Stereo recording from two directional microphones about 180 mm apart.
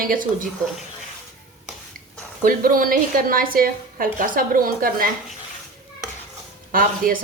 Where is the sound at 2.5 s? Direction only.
50° right (ahead or behind).